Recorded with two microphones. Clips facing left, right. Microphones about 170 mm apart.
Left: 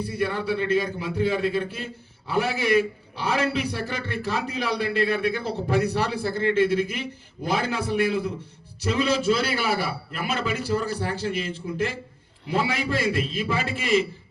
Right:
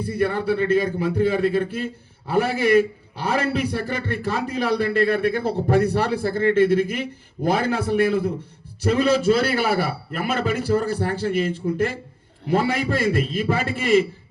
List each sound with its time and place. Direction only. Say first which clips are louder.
0.0 s a man's voice: right 4 dB; 55° right (ahead or behind)